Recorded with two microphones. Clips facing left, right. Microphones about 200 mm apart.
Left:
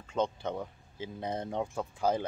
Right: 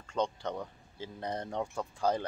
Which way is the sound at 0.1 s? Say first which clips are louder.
Left 1 dB; 5° left (ahead or behind).